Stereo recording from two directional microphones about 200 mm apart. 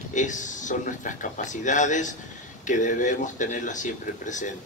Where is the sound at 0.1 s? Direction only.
40° left (ahead or behind).